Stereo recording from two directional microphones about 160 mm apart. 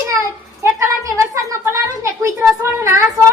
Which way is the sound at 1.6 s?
15° right (ahead or behind).